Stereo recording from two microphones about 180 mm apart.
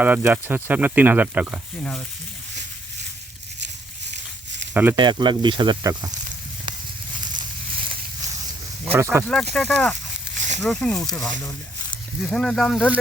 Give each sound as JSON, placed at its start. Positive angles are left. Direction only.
{"t": 0.0, "sound": "speech", "side_deg": -10}
{"t": 4.7, "sound": "speech", "side_deg": -10}
{"t": 4.9, "sound": "speech", "side_deg": -25}
{"t": 8.8, "sound": "speech", "side_deg": -15}
{"t": 9.2, "sound": "speech", "side_deg": 0}
{"t": 10.3, "sound": "a sound", "side_deg": -45}
{"t": 10.6, "sound": "speech", "side_deg": 5}